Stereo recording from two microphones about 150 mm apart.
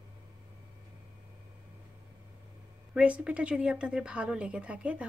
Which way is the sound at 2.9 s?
10° right (ahead or behind).